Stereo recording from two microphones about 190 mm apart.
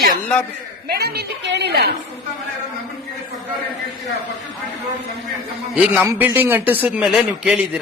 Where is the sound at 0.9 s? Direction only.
60° right (ahead or behind).